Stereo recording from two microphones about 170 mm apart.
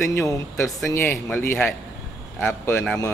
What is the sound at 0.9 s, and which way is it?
A man's voice, 15° left (ahead or behind).